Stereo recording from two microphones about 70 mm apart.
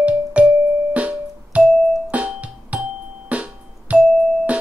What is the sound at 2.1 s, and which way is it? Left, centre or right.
Music, centre.